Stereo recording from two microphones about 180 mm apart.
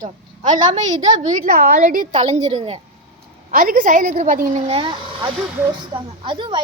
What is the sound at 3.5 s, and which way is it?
A woman's voice, 50° right (ahead or behind).